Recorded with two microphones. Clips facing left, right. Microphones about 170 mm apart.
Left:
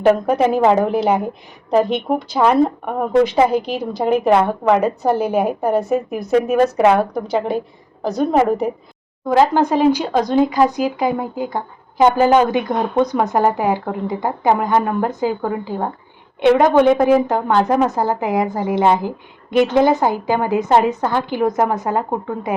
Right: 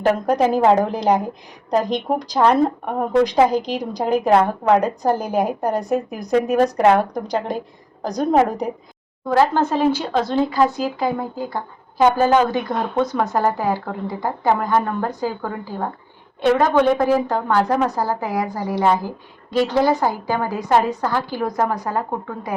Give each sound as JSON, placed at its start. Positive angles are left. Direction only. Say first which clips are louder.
{"t": 0.0, "sound": "a woman's voice", "louder": "left 3 dB", "side_deg": 5}
{"t": 3.6, "sound": "a woman's voice", "louder": "left 2 dB", "side_deg": 5}
{"t": 9.2, "sound": "a woman's voice", "louder": "left 3 dB", "side_deg": 15}